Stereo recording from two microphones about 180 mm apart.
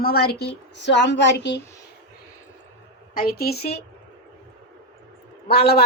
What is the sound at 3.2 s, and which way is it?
Speech, 55° left (ahead or behind).